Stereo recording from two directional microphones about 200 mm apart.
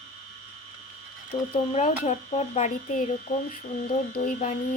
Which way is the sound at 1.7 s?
35° left (ahead or behind).